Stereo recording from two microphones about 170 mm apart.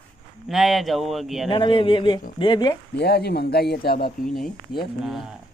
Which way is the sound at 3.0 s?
70° left (ahead or behind).